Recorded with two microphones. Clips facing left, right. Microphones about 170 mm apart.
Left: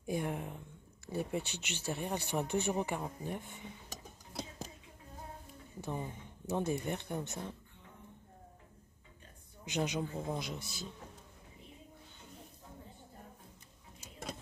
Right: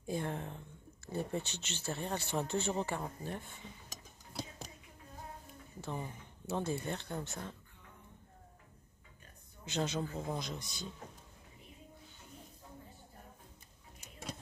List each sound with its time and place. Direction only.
0.0 s speech: 15° left (ahead or behind)
5.8 s speech: 15° left (ahead or behind)
9.7 s speech: 15° left (ahead or behind)
10.2 s a man's voice: 5° left (ahead or behind)